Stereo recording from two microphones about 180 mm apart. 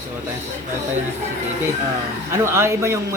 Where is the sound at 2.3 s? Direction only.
15° right (ahead or behind).